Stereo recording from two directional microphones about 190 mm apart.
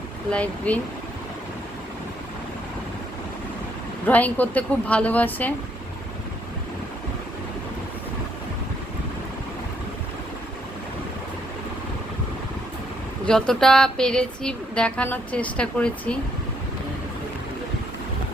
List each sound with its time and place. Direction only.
0.3 s speech: 5° left (ahead or behind)
4.0 s speech: 10° left (ahead or behind)
13.2 s a sound: 5° left (ahead or behind)